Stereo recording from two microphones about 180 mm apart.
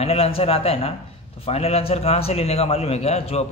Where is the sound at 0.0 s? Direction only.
35° left (ahead or behind).